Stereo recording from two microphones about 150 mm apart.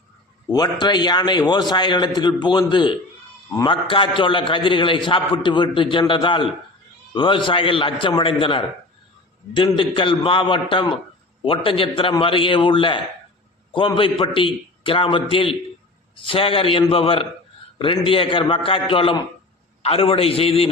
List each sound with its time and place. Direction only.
0.5 s a man's voice: 25° left (ahead or behind)